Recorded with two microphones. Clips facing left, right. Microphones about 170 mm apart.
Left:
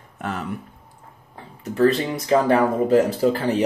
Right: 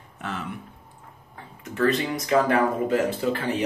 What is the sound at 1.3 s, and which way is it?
Speech, 30° left (ahead or behind).